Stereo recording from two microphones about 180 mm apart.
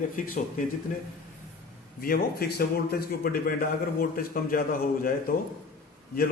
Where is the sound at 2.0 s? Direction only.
55° left (ahead or behind).